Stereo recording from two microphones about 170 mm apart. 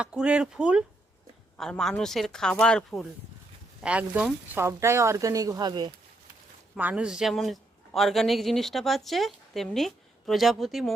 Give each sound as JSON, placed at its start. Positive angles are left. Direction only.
{"t": 0.0, "sound": "speech", "side_deg": -5}
{"t": 3.8, "sound": "speech", "side_deg": -5}
{"t": 6.7, "sound": "speech", "side_deg": -10}